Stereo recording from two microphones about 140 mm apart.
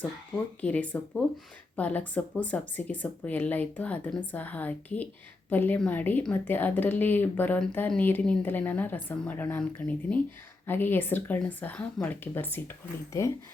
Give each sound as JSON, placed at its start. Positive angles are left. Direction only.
{"t": 0.6, "sound": "speech", "side_deg": 10}